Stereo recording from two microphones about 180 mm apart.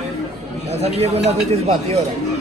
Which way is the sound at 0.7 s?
35° right (ahead or behind).